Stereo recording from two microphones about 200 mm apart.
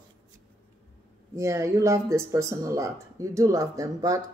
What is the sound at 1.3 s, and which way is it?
Speech, 15° right (ahead or behind).